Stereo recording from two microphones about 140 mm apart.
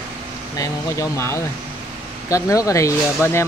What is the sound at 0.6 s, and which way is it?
Speech, 20° left (ahead or behind).